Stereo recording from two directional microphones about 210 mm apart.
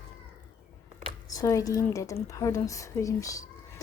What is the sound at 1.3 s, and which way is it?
Speech, 15° left (ahead or behind).